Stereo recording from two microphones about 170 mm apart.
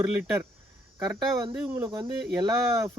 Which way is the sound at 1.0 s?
25° right (ahead or behind).